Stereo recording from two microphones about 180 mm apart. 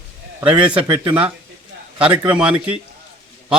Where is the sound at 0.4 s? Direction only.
30° right (ahead or behind).